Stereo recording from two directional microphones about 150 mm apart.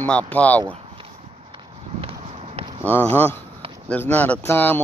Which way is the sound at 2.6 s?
40° right (ahead or behind).